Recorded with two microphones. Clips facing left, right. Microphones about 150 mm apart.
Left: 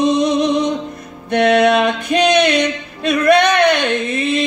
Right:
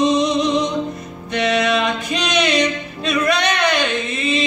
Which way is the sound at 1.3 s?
55° left (ahead or behind).